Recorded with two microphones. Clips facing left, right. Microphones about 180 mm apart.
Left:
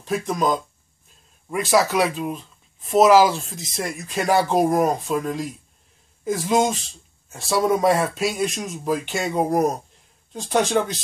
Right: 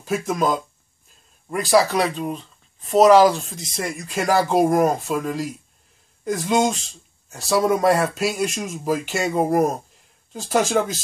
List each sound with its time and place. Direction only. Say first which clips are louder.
0.0 s speech: right 1 dB; 5° right (ahead or behind)